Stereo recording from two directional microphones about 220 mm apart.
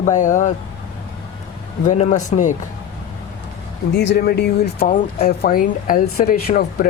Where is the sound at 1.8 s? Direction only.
35° left (ahead or behind).